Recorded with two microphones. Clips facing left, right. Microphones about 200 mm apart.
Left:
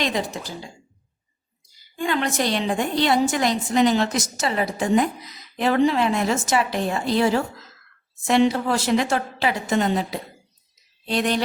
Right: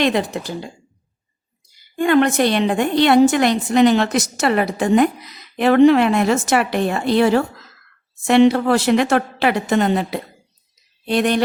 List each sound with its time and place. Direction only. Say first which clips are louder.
0.0 s a woman's voice: right 7 dB; 65° right (ahead or behind)
2.0 s a woman's voice: right 9 dB; 60° right (ahead or behind)